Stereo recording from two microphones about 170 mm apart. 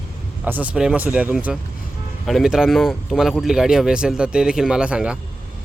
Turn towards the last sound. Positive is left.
turn(degrees=-5)  # may be behind; listen again after turning